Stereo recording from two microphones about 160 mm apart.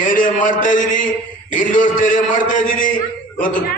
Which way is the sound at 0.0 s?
55° left (ahead or behind).